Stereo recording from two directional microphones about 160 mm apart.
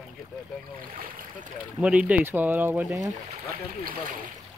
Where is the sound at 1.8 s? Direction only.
10° right (ahead or behind).